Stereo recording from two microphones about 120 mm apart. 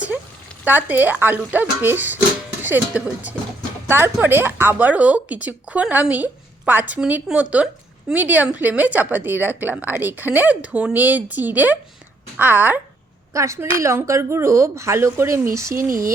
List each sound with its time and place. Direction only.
0.6 s a woman's voice: 15° right (ahead or behind)
13.3 s a woman's voice: 25° right (ahead or behind)